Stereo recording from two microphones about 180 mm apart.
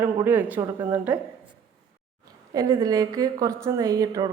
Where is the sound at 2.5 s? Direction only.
20° right (ahead or behind).